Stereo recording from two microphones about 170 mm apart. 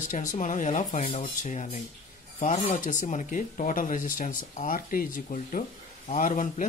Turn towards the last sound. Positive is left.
turn(degrees=50)  # may be behind; listen again after turning